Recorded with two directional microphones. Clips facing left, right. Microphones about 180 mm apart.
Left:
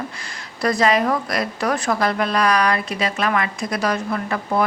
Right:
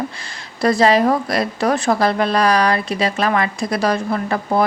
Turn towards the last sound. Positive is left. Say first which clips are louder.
# right 3 dB
turn(degrees=-35)  # may be behind; listen again after turning